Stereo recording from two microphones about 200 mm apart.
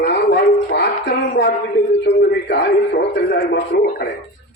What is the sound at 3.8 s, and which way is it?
Speech, 50° left (ahead or behind).